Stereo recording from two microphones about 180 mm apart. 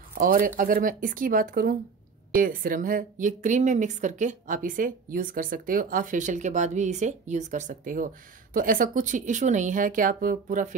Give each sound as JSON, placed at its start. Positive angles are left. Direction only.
{"t": 0.2, "sound": "a woman's voice", "side_deg": -50}